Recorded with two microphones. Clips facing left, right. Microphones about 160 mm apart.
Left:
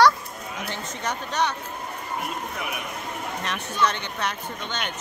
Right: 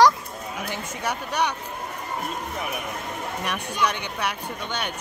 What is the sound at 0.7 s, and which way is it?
Speech, 10° right (ahead or behind).